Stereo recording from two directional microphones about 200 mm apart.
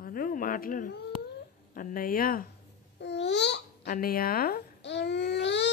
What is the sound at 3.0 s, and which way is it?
Speech, 60° left (ahead or behind).